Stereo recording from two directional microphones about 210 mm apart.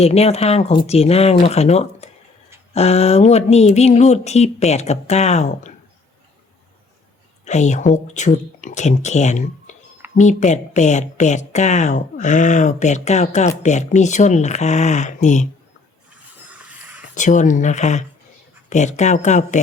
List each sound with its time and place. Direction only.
0.0 s speech: 30° left (ahead or behind)
7.4 s speech: 35° left (ahead or behind)
16.5 s a sound: 5° right (ahead or behind)
17.2 s speech: 35° left (ahead or behind)